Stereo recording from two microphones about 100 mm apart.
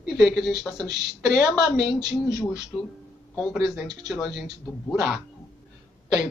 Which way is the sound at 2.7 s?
10° left (ahead or behind).